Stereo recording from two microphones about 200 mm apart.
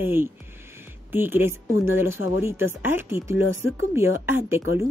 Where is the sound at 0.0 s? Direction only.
10° right (ahead or behind).